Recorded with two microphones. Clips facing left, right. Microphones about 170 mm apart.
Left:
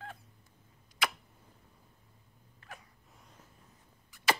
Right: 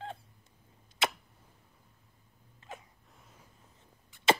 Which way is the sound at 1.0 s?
25° right (ahead or behind).